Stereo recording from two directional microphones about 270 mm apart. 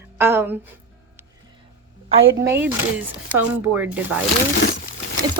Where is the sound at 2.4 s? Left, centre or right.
Centre.